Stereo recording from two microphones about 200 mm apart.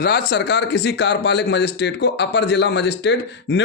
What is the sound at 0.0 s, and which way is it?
A man's voice, 50° left (ahead or behind).